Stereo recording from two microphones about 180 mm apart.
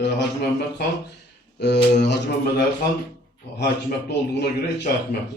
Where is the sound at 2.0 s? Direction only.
70° left (ahead or behind).